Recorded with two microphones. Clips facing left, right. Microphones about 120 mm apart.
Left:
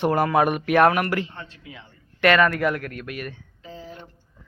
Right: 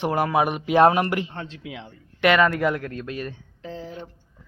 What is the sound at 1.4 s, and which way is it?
Speech, 85° right.